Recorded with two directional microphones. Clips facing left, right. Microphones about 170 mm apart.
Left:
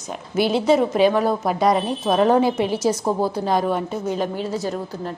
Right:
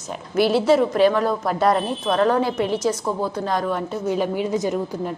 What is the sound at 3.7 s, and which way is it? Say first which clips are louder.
A woman's voice: even; 5° right (ahead or behind).